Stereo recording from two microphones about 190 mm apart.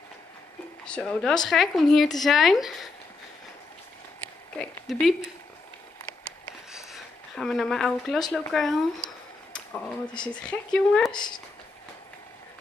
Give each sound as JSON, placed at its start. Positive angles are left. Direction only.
{"t": 0.8, "sound": "speech", "side_deg": 5}
{"t": 4.9, "sound": "speech", "side_deg": 0}
{"t": 6.7, "sound": "a sound", "side_deg": 0}
{"t": 8.3, "sound": "speech", "side_deg": 0}
{"t": 11.1, "sound": "speech", "side_deg": 25}